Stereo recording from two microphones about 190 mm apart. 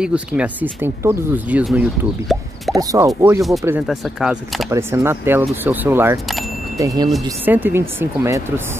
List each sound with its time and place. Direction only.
0.0 s speech: 5° right (ahead or behind)
2.8 s speech: 20° right (ahead or behind)
3.8 s speech: centre (ahead or behind)
4.6 s speech: 15° right (ahead or behind)